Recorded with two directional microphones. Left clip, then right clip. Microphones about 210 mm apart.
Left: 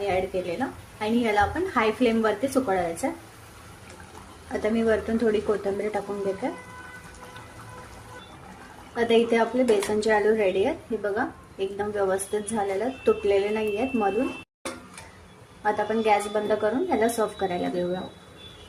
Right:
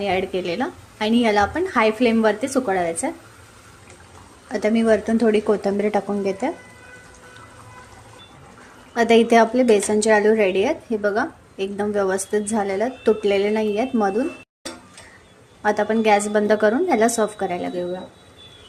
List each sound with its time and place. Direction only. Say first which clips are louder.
0.0 s a woman's voice: right 4 dB; 30° right (ahead or behind)
4.5 s a woman's voice: right 5 dB; 25° right (ahead or behind)
9.0 s a woman's voice: right 7 dB; 30° right (ahead or behind)
15.6 s a woman's voice: right 5 dB; 30° right (ahead or behind)
17.4 s speech: right 2 dB; 10° right (ahead or behind)